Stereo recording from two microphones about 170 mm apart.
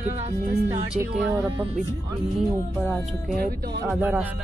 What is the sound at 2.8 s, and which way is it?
Speech, 5° left (ahead or behind).